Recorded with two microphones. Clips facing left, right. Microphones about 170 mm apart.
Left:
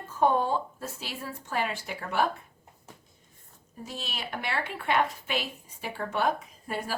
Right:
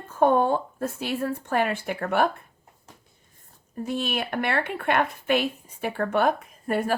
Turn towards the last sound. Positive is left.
turn(degrees=-55)  # may be behind; listen again after turning